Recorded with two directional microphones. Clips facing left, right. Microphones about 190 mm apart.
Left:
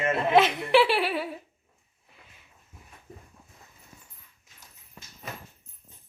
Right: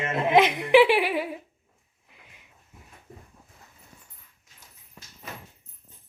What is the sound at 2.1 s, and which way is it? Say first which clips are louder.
Sniff: right 1 dB; 15° right (ahead or behind).